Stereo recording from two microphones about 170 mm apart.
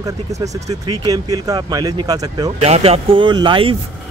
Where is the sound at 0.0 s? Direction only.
20° right (ahead or behind).